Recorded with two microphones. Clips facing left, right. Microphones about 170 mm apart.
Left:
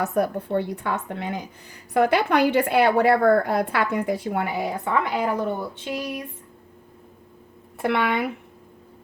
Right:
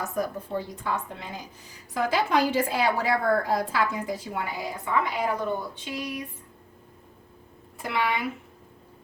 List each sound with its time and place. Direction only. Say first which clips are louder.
0.0 s a woman's voice: left 6 dB; 65° left (ahead or behind)
7.8 s a woman's voice: left 5 dB; 60° left (ahead or behind)